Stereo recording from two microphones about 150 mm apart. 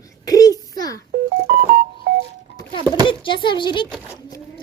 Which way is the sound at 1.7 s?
90° right.